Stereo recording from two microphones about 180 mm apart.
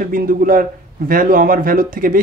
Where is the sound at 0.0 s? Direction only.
50° right (ahead or behind).